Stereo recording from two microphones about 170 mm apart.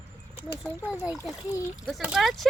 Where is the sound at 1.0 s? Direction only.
15° left (ahead or behind).